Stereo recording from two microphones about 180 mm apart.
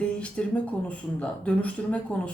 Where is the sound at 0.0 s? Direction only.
5° left (ahead or behind).